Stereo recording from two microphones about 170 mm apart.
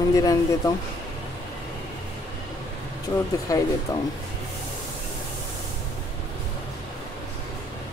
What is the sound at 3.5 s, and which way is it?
Speech, 20° left (ahead or behind).